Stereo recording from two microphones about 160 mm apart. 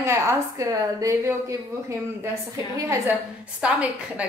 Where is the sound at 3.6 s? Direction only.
10° right (ahead or behind).